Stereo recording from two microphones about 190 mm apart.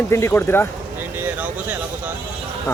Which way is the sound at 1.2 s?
10° right (ahead or behind).